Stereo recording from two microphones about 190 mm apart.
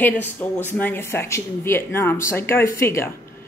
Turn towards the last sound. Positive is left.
turn(degrees=15)  # may be behind; listen again after turning